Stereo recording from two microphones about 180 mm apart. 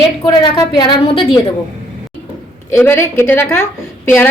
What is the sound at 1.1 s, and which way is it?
Speech, 30° left (ahead or behind).